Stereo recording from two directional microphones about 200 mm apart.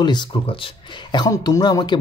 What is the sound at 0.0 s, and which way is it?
Speech, 20° left (ahead or behind).